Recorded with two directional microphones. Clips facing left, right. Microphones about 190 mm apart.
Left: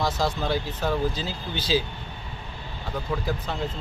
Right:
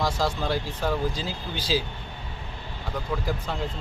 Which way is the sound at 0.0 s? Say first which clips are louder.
Even; 10° right (ahead or behind).